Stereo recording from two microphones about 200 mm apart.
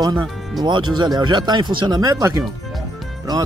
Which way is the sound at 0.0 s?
20° right (ahead or behind).